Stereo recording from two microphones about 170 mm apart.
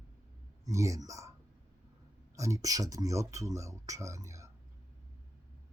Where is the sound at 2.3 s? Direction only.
20° right (ahead or behind).